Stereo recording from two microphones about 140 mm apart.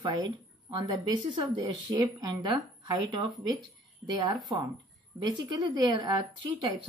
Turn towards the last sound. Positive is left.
turn(degrees=-35)  # may be behind; listen again after turning